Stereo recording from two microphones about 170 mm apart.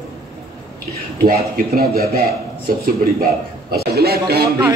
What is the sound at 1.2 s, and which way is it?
A man's voice, 65° right (ahead or behind).